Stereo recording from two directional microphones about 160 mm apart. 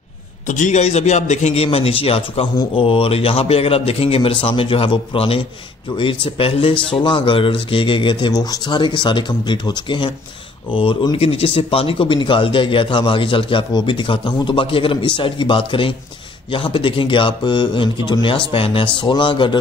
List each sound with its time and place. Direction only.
0.5 s speech: 50° left (ahead or behind); by 19.6 s 30° left (ahead or behind)